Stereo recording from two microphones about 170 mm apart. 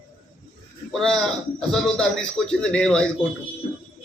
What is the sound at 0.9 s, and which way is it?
Speech, 5° left (ahead or behind).